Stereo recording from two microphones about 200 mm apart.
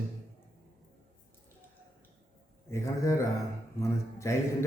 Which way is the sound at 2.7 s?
15° left (ahead or behind).